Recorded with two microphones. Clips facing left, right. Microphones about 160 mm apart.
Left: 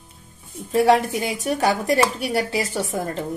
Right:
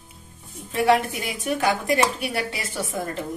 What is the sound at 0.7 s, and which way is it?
Speech, 35° left (ahead or behind).